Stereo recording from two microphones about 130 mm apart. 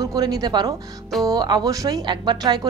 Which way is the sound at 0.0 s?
30° right (ahead or behind).